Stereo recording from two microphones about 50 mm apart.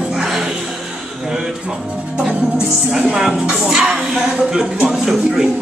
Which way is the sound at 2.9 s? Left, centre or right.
Centre.